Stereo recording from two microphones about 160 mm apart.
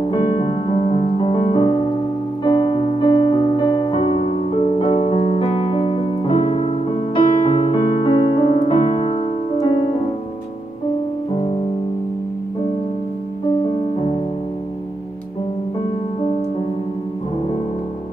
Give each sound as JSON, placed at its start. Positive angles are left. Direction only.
{"t": 0.0, "sound": "music", "side_deg": 35}
{"t": 2.4, "sound": "piano", "side_deg": 30}